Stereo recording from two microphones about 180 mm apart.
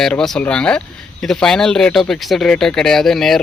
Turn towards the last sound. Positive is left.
turn(degrees=0)  # may be behind; listen again after turning